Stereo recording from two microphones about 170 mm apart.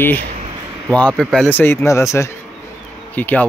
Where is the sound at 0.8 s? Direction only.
5° left (ahead or behind).